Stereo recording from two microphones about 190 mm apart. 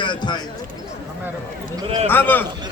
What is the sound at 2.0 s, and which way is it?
Speech, 10° left (ahead or behind).